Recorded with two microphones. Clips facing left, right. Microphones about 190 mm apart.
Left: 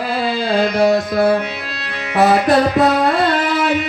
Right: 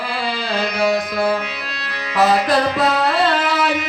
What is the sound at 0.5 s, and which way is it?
Music, 50° left (ahead or behind).